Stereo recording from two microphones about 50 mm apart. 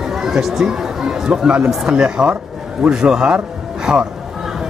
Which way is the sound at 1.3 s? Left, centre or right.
Right.